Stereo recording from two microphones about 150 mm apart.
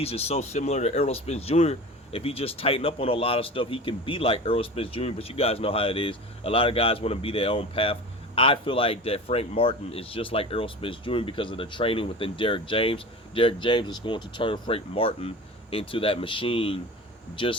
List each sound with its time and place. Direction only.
0.0 s speech: 40° left (ahead or behind)